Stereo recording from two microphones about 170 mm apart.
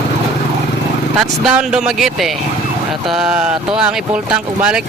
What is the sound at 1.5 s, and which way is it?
Speech, 5° right (ahead or behind).